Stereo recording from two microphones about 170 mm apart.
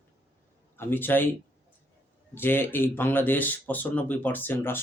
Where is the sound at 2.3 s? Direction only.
15° left (ahead or behind).